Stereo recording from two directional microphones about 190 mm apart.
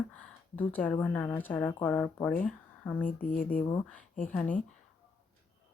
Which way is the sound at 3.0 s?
45° left (ahead or behind).